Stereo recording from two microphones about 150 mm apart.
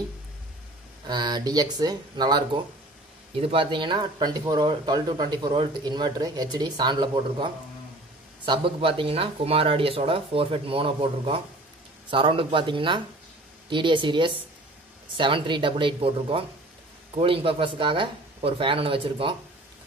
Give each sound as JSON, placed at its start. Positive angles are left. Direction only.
{"t": 1.0, "sound": "speech", "side_deg": -30}